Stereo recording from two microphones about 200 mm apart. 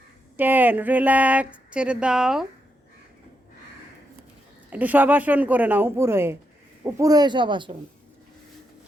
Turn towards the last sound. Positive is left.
turn(degrees=-25)  # may be behind; listen again after turning